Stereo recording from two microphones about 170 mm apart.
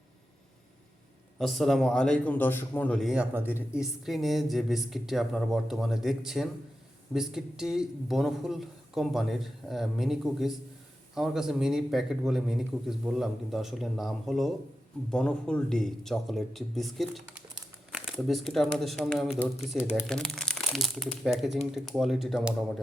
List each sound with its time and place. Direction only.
1.4 s a man's voice: centre (ahead or behind)